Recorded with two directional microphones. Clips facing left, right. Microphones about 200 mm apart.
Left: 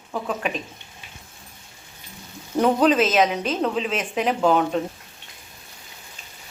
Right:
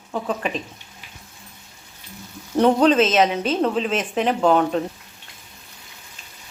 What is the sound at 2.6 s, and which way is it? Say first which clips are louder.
A woman's voice: right 2 dB; 5° left (ahead or behind).